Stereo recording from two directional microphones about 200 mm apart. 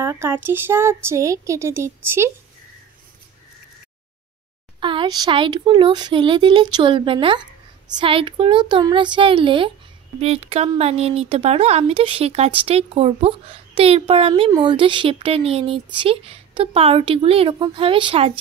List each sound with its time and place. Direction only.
0.0 s speech: 15° right (ahead or behind)
4.7 s speech: 25° right (ahead or behind)